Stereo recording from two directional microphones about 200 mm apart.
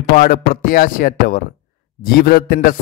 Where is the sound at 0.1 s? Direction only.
45° left (ahead or behind).